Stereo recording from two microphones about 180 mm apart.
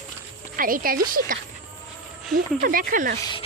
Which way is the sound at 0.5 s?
50° right (ahead or behind).